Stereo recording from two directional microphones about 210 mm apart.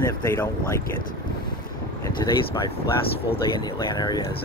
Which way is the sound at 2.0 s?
20° left (ahead or behind).